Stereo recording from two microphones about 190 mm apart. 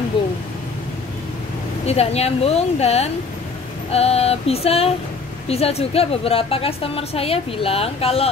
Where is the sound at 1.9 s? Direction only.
35° left (ahead or behind).